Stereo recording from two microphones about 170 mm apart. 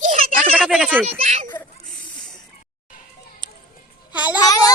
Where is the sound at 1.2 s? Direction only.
35° right (ahead or behind).